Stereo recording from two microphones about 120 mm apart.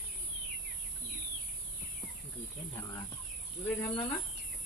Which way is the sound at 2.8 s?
15° left (ahead or behind).